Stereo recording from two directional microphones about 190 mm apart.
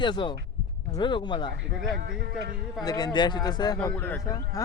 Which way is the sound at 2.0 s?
50° right (ahead or behind).